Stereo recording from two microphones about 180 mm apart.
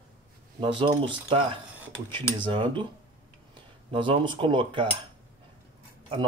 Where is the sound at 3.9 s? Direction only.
30° right (ahead or behind).